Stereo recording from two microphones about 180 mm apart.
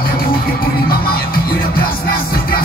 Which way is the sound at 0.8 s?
55° left (ahead or behind).